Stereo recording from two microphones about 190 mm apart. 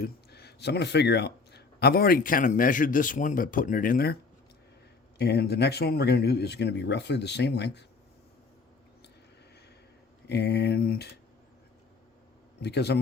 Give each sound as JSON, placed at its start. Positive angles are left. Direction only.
{"t": 0.0, "sound": "a man's voice", "side_deg": 60}
{"t": 10.2, "sound": "speech", "side_deg": 60}
{"t": 12.5, "sound": "speech", "side_deg": 60}